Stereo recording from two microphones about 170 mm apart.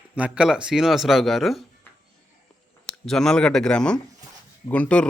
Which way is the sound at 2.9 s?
5° left (ahead or behind).